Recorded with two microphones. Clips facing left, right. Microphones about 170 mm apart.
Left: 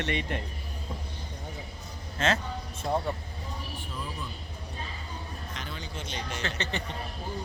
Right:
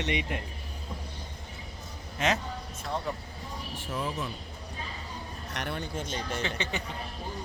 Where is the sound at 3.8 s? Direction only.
80° right.